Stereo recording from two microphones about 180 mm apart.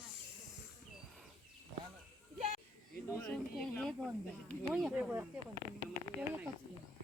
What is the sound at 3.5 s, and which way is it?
Speech, 5° left (ahead or behind).